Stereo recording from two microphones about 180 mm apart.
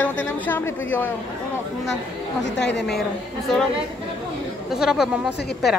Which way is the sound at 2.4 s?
80° left.